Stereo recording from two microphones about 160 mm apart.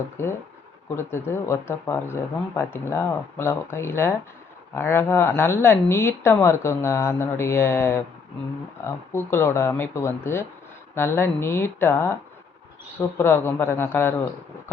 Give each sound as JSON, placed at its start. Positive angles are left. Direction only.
{"t": 0.2, "sound": "speech", "side_deg": 15}